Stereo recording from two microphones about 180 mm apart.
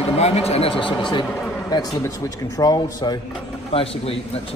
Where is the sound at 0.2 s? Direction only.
35° left (ahead or behind).